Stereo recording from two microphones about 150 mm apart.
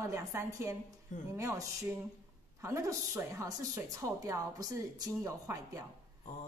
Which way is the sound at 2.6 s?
20° right (ahead or behind).